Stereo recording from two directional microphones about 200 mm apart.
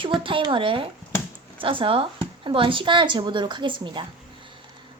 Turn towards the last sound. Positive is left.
turn(degrees=-25)  # may be behind; listen again after turning